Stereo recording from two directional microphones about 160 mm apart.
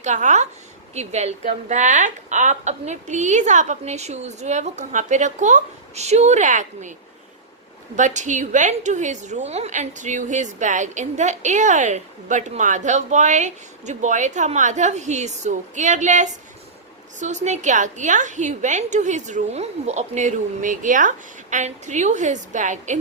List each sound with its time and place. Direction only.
0.0 s a woman's voice: 50° right (ahead or behind)
7.9 s a woman's voice: 50° right (ahead or behind)